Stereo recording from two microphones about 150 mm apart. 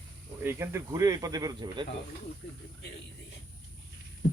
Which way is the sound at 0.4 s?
15° right (ahead or behind).